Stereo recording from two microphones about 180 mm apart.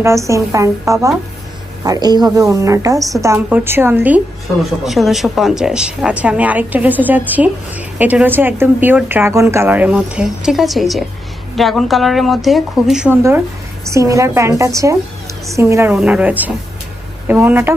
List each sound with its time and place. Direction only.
0.0 s a woman's voice: 15° right (ahead or behind)
13.8 s a woman's voice: 15° right (ahead or behind)